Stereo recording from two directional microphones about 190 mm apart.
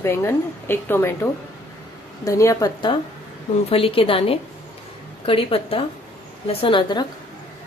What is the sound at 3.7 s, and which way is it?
A woman's voice, 30° left (ahead or behind).